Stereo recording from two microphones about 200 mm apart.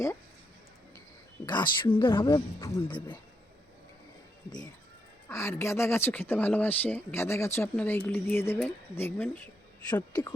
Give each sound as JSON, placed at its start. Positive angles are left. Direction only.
{"t": 1.5, "sound": "speech", "side_deg": 20}
{"t": 5.3, "sound": "speech", "side_deg": 15}
{"t": 9.9, "sound": "speech", "side_deg": 20}